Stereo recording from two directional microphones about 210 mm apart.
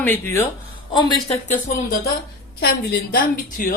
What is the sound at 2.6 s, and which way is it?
Speech, 45° left (ahead or behind).